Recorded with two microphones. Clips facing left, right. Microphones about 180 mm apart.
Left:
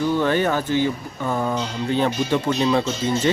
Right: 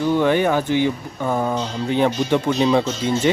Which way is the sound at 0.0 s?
15° right (ahead or behind).